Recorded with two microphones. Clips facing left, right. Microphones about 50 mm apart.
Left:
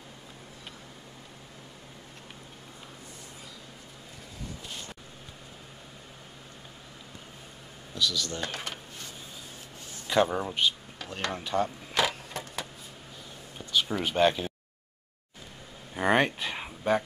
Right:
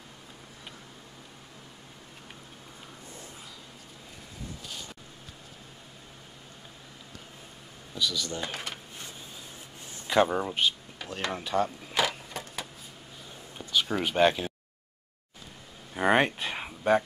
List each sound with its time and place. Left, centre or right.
7.9 s speech: centre
10.0 s speech: centre
11.1 s a sound: centre
13.6 s whispering: centre
14.0 s speech: centre
15.9 s a sound: centre